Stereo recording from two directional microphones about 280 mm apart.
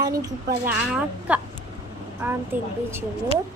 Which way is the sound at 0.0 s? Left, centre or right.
Centre.